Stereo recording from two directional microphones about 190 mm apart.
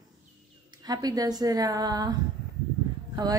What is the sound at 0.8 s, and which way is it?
A woman's voice, 20° right (ahead or behind).